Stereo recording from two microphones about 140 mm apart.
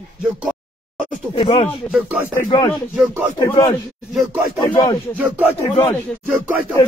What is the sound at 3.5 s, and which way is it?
Speech, 30° left (ahead or behind).